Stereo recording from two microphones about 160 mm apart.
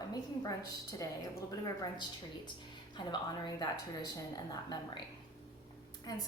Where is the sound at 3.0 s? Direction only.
30° left (ahead or behind).